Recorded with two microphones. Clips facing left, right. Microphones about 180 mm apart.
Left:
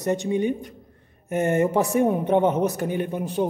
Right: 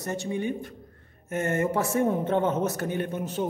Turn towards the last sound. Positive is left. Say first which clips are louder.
# left 4 dB
turn(degrees=15)  # may be behind; listen again after turning